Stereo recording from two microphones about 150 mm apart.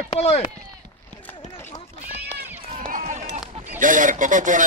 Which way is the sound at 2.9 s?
65° right (ahead or behind).